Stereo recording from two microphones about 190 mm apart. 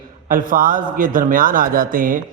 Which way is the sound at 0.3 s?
45° right (ahead or behind).